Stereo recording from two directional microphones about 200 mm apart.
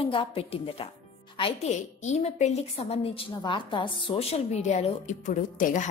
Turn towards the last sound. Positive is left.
turn(degrees=40)  # may be behind; listen again after turning